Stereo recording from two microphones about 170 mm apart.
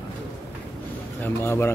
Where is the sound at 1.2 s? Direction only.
15° left (ahead or behind).